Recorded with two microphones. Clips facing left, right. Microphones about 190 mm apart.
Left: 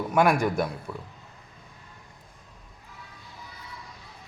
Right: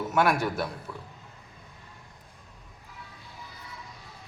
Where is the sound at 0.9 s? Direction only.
25° left (ahead or behind).